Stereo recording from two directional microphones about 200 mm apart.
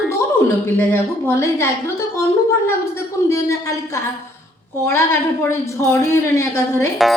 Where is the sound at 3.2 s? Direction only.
15° left (ahead or behind).